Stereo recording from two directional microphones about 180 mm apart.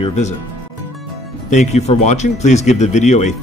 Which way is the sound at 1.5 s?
40° left (ahead or behind).